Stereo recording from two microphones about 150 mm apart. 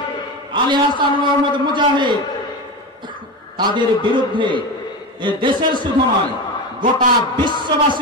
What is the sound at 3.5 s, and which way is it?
A man's voice, 30° right (ahead or behind).